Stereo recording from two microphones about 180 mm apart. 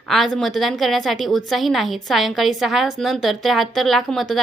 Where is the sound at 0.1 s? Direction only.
Centre (ahead or behind).